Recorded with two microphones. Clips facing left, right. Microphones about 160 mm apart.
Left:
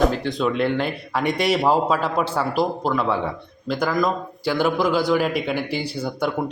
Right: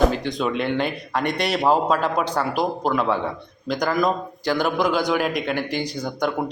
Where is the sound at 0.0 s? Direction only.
Centre (ahead or behind).